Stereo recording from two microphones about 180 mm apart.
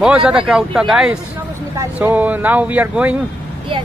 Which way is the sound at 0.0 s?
5° right (ahead or behind).